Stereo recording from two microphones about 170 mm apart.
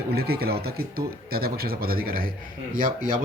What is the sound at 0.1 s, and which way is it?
Speech, 65° right (ahead or behind).